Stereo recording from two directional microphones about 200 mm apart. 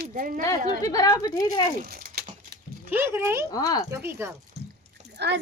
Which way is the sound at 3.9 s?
15° right (ahead or behind).